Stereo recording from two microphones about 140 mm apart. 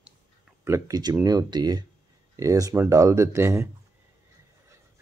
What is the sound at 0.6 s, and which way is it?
Speech, 20° right (ahead or behind).